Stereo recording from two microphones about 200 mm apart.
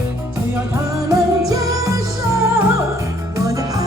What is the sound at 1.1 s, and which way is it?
Music, 15° right (ahead or behind).